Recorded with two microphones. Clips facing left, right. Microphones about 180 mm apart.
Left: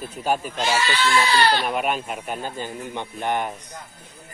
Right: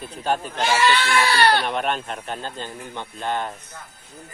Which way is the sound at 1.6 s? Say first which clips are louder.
Left 1 dB; 5° left (ahead or behind).